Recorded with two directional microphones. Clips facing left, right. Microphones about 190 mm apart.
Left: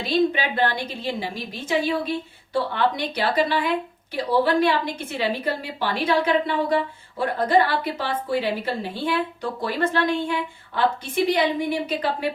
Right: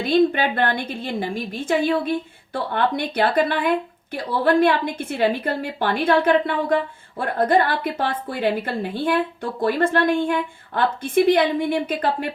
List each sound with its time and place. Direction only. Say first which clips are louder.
0.0 s a woman's voice: right 4 dB; 55° right (ahead or behind)